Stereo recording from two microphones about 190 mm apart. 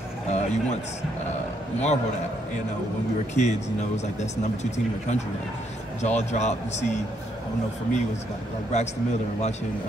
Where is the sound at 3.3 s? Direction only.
35° left (ahead or behind).